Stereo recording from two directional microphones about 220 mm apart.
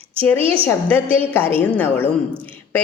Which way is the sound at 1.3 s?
10° left (ahead or behind).